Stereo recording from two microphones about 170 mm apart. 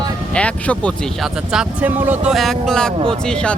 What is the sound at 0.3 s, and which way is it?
Speech, 10° left (ahead or behind).